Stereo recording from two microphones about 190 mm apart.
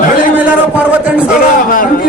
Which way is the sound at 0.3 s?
5° right (ahead or behind).